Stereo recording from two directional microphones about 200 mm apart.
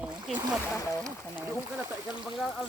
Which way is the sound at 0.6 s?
15° left (ahead or behind).